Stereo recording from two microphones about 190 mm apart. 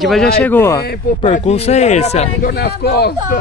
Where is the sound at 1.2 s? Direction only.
35° left (ahead or behind).